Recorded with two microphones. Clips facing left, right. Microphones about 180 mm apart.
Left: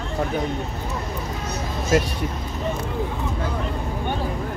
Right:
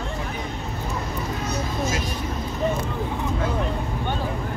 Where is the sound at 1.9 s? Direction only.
60° left (ahead or behind).